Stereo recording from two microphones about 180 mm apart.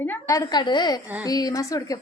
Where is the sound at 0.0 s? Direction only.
15° left (ahead or behind).